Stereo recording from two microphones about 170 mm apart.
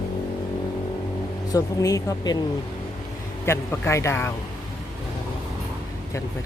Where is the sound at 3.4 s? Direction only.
15° left (ahead or behind).